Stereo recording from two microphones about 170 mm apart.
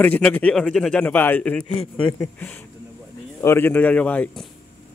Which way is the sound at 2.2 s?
10° left (ahead or behind).